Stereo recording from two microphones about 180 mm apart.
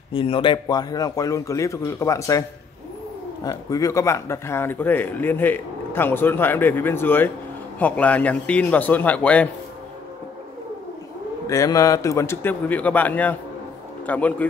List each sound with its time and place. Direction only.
0.1 s a man's voice: 30° left (ahead or behind)
3.4 s speech: 20° left (ahead or behind)
11.4 s speech: 20° left (ahead or behind)